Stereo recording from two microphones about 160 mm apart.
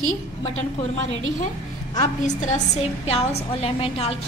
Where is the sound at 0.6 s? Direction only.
45° left (ahead or behind).